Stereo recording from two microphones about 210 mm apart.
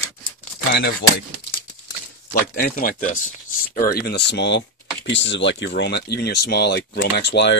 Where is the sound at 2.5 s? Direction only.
40° left (ahead or behind).